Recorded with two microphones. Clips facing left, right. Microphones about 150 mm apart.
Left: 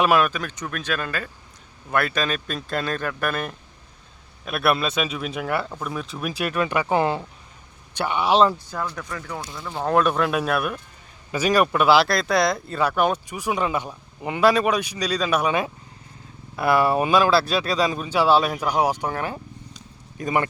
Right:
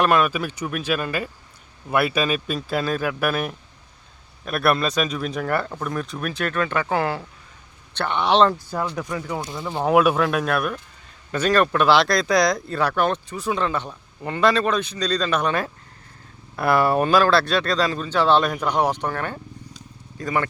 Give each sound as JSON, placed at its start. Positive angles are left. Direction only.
{"t": 0.0, "sound": "speech", "side_deg": 0}
{"t": 7.9, "sound": "speech", "side_deg": 10}
{"t": 8.9, "sound": "speech", "side_deg": -15}
{"t": 10.2, "sound": "speech", "side_deg": 0}